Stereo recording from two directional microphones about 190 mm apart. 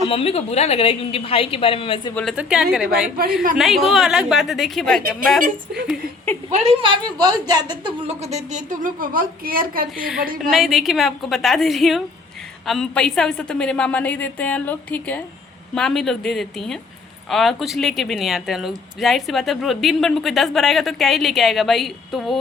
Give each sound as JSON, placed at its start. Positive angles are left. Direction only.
{"t": 0.1, "sound": "a woman's voice", "side_deg": 30}
{"t": 2.3, "sound": "speech", "side_deg": -5}
{"t": 6.5, "sound": "a woman's voice", "side_deg": -35}
{"t": 8.2, "sound": "a woman's voice", "side_deg": -35}
{"t": 10.5, "sound": "speech", "side_deg": 0}